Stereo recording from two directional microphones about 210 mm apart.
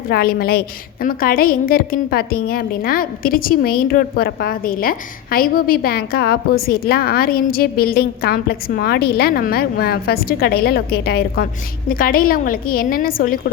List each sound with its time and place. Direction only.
0.1 s a woman's voice: 45° left (ahead or behind)